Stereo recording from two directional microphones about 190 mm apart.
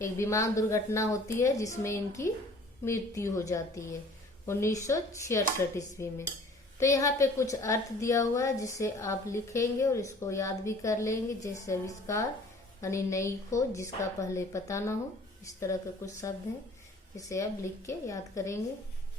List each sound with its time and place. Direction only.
0.0 s a woman's voice: 15° left (ahead or behind)
16.0 s a woman's voice: 15° left (ahead or behind)